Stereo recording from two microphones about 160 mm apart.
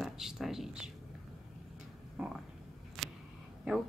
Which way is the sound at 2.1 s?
Centre (ahead or behind).